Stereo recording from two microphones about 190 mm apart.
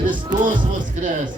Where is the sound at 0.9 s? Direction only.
40° right (ahead or behind).